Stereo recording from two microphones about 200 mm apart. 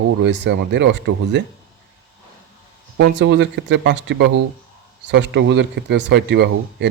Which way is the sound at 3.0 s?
60° right (ahead or behind).